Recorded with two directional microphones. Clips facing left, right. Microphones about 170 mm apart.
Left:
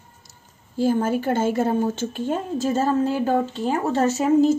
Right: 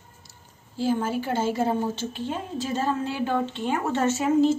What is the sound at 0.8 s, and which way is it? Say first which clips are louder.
A woman's voice: left 4 dB; 50° left (ahead or behind).